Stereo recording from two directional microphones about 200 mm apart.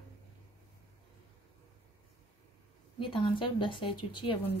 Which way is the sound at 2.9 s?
25° left (ahead or behind).